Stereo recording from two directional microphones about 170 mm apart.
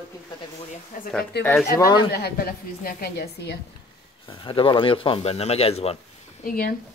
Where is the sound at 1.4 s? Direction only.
75° left (ahead or behind).